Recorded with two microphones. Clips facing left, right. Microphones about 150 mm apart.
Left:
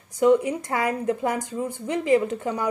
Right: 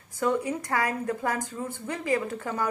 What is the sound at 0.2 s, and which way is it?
A woman's voice, 20° left (ahead or behind).